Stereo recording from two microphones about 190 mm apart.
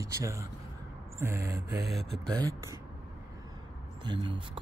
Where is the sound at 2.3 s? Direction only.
20° right (ahead or behind).